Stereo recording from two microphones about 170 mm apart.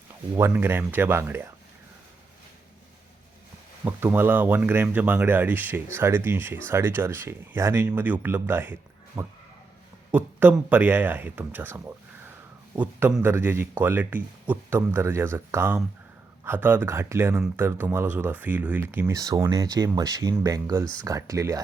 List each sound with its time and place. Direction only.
0.3 s speech: 15° right (ahead or behind)
3.8 s speech: 10° right (ahead or behind)